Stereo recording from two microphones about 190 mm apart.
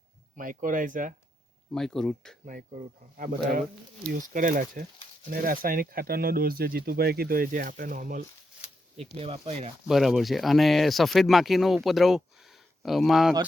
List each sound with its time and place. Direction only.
0.3 s speech: 45° right (ahead or behind)
1.7 s speech: centre (ahead or behind)
2.5 s speech: 45° right (ahead or behind)
9.1 s speech: 30° right (ahead or behind)
9.9 s speech: centre (ahead or behind)